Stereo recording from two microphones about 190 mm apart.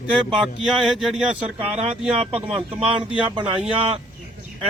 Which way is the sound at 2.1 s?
30° right (ahead or behind).